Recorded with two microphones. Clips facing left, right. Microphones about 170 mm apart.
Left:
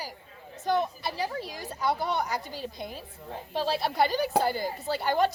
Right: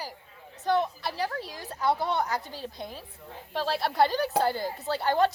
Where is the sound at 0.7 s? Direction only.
15° left (ahead or behind).